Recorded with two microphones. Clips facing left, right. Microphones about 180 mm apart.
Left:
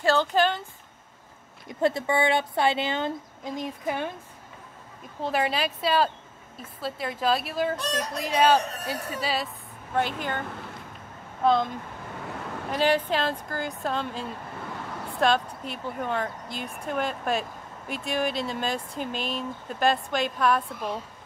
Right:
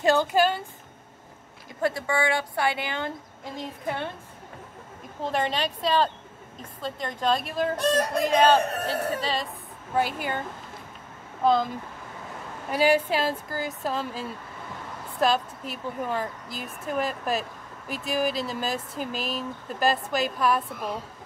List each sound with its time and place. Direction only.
0.0 s speech: 10° right (ahead or behind)
1.8 s a woman's voice: 25° left (ahead or behind)
5.2 s speech: 5° left (ahead or behind)
7.8 s fowl: 55° right (ahead or behind)
8.4 s a woman's voice: 10° left (ahead or behind); by 10.4 s 5° right (ahead or behind)
11.4 s speech: centre (ahead or behind)
12.7 s speech: 10° right (ahead or behind)